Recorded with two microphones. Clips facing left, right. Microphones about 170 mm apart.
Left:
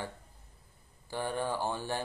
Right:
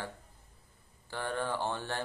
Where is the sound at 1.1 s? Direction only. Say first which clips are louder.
Left 1 dB; 15° left (ahead or behind).